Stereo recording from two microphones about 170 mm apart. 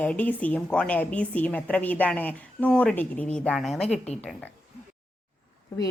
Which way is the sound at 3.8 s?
40° left (ahead or behind).